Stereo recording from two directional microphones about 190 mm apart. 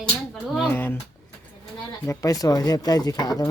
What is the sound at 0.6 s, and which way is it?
Speech, 10° left (ahead or behind).